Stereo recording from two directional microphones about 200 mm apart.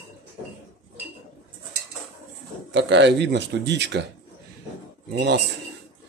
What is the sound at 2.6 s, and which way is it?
Speech, 65° right (ahead or behind).